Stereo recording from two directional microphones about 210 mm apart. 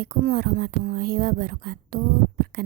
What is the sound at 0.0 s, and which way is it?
Speech, 40° right (ahead or behind).